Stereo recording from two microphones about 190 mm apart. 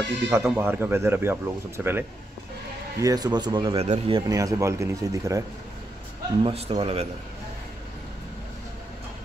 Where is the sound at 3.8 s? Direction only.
35° right (ahead or behind).